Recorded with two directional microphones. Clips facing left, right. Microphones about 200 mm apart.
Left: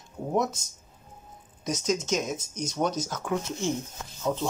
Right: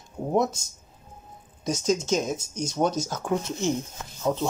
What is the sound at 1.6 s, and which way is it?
Speech, 30° right (ahead or behind).